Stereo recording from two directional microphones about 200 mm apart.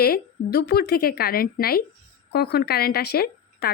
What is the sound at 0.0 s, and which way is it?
A woman's voice, 50° left (ahead or behind).